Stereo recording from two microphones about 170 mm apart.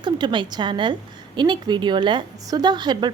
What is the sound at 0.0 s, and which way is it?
A woman's voice, 25° right (ahead or behind).